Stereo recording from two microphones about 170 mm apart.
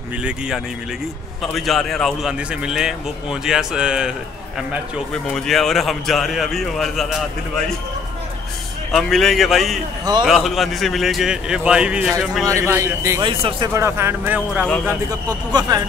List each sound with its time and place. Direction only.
1.4 s a man's voice: centre (ahead or behind)
5.1 s a man's voice: centre (ahead or behind)
8.9 s a man's voice: centre (ahead or behind)
12.6 s speech: 15° right (ahead or behind)
13.2 s speech: 30° right (ahead or behind)
13.7 s speech: 15° right (ahead or behind)
14.9 s a man's voice: 20° right (ahead or behind)